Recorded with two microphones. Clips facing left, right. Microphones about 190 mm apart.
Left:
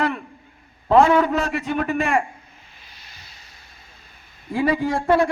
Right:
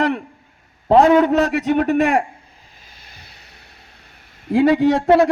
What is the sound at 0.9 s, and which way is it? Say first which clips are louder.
Speech: right 3 dB; 40° right (ahead or behind).